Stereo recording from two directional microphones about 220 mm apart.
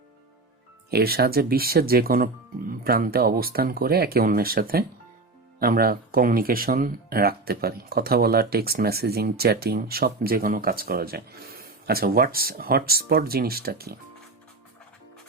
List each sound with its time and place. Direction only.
0.9 s speech: 45° right (ahead or behind)